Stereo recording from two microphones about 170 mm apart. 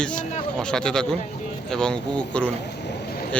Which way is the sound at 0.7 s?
5° left (ahead or behind).